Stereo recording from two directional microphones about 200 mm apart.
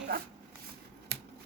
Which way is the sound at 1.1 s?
55° right (ahead or behind).